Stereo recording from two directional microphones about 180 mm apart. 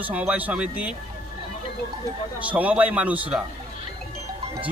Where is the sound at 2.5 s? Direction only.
10° right (ahead or behind).